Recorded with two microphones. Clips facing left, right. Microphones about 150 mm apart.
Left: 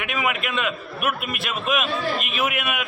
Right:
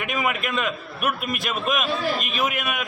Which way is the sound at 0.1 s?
5° left (ahead or behind).